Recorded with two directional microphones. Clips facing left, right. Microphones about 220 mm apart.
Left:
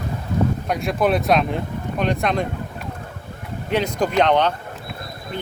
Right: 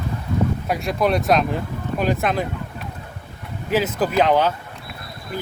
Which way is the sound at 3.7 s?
5° right (ahead or behind).